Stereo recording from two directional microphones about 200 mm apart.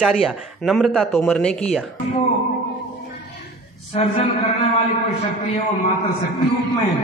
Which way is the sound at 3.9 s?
30° left (ahead or behind).